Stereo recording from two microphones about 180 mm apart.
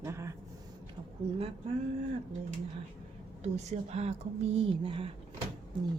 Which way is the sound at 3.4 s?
40° right (ahead or behind).